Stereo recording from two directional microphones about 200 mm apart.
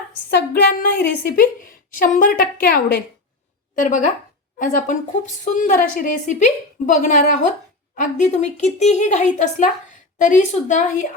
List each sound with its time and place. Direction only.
0.3 s a woman's voice: 55° left (ahead or behind)
3.8 s speech: 40° left (ahead or behind)